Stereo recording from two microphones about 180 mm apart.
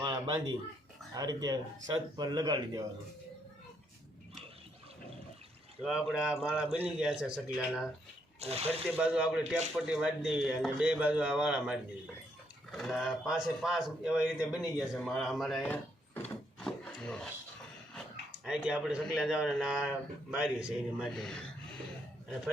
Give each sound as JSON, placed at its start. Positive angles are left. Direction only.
{"t": 1.1, "sound": "speech", "side_deg": -20}
{"t": 5.8, "sound": "a man's voice", "side_deg": 0}
{"t": 8.4, "sound": "speech", "side_deg": -35}
{"t": 9.0, "sound": "a man's voice", "side_deg": -5}
{"t": 17.9, "sound": "a sound", "side_deg": -5}
{"t": 19.1, "sound": "a man's voice", "side_deg": -5}